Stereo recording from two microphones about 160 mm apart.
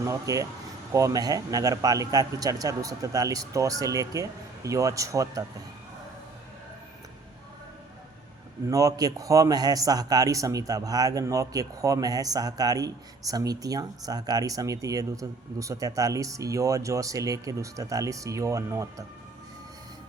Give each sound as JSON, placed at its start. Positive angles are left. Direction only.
{"t": 0.0, "sound": "a man's voice", "side_deg": -20}
{"t": 8.6, "sound": "a man's voice", "side_deg": -20}